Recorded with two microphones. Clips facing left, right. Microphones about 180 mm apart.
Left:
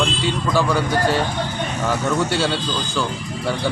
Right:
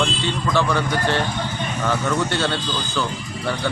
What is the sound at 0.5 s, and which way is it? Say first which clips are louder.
Speech: left 2 dB; 10° left (ahead or behind).